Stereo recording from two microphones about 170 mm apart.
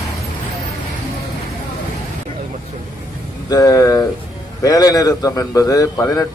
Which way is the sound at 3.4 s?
20° left (ahead or behind).